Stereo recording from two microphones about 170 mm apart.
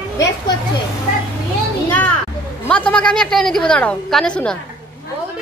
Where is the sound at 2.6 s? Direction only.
5° left (ahead or behind).